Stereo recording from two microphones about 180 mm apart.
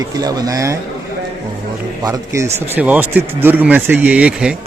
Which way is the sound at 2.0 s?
15° right (ahead or behind).